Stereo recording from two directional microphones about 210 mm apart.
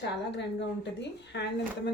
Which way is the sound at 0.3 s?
55° left (ahead or behind).